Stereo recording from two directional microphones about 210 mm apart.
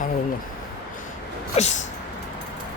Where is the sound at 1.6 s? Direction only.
30° left (ahead or behind).